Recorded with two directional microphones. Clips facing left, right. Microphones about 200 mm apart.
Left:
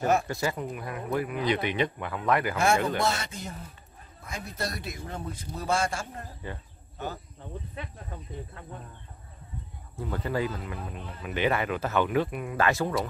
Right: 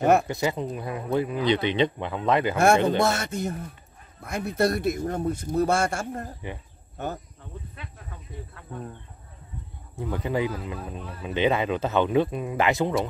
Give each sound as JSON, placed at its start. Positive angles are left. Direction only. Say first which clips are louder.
{"t": 0.0, "sound": "a man's voice", "louder": "right 5 dB", "side_deg": -60}
{"t": 0.3, "sound": "speech", "louder": "right 4 dB", "side_deg": -20}
{"t": 3.1, "sound": "speech", "louder": "right 5 dB", "side_deg": -50}
{"t": 4.2, "sound": "speech", "louder": "right 11 dB", "side_deg": -60}
{"t": 5.7, "sound": "a man's voice", "louder": "left 2 dB", "side_deg": -65}
{"t": 6.4, "sound": "speech", "louder": "right 3 dB", "side_deg": -20}
{"t": 9.9, "sound": "speech", "louder": "right 3 dB", "side_deg": -15}